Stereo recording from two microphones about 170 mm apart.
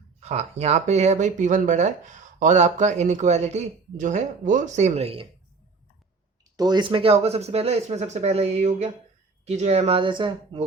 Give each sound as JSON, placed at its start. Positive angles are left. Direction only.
{"t": 0.2, "sound": "speech", "side_deg": -40}
{"t": 6.6, "sound": "speech", "side_deg": -25}